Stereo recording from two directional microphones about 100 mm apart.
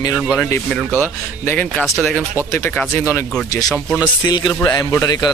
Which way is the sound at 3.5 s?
40° left (ahead or behind).